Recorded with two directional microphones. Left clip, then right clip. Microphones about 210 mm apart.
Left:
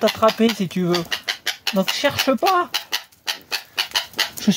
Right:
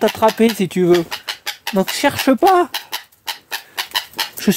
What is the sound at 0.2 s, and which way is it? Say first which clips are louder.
Speech: right 3 dB; 50° right (ahead or behind).